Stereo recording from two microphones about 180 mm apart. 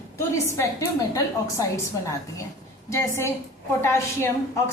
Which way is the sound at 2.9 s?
15° left (ahead or behind).